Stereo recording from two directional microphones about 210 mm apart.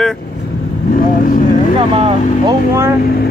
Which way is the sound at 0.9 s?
40° left (ahead or behind).